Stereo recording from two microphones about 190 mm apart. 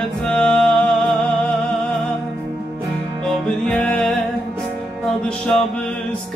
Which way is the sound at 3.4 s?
5° left (ahead or behind).